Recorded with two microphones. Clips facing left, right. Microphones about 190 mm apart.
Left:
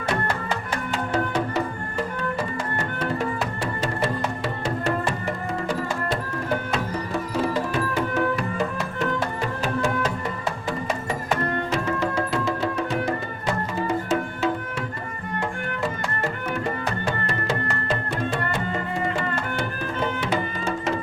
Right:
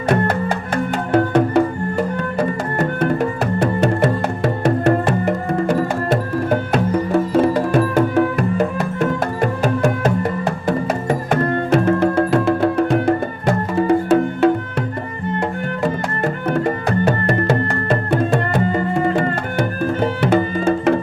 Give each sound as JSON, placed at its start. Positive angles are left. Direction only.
{"t": 0.1, "sound": "music", "side_deg": -55}
{"t": 15.8, "sound": "music", "side_deg": -55}
{"t": 20.7, "sound": "music", "side_deg": -60}